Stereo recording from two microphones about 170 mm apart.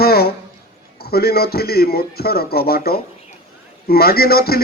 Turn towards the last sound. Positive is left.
turn(degrees=65)  # may be behind; listen again after turning